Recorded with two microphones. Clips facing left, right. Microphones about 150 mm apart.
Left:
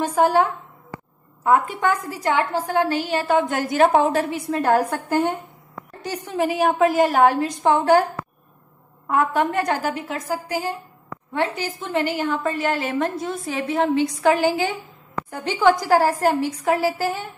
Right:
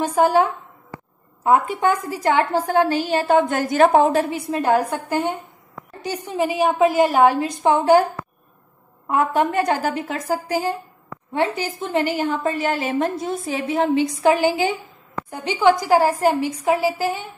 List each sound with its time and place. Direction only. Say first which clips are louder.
1.4 s a woman's voice: right 1 dB; 20° right (ahead or behind); by 4.0 s 40° right (ahead or behind)
4.1 s a woman's voice: right 2 dB; 20° right (ahead or behind)
6.0 s a woman's voice: right 1 dB; 15° right (ahead or behind)
9.0 s a woman's voice: right 1 dB; 20° right (ahead or behind)
11.3 s a woman's voice: right 2 dB; 15° right (ahead or behind)
15.3 s a woman's voice: right 1 dB; 5° right (ahead or behind)
15.9 s a woman's voice: right 1 dB; 10° right (ahead or behind)